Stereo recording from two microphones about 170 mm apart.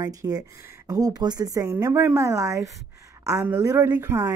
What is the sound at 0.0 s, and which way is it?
A woman's voice, 20° right (ahead or behind).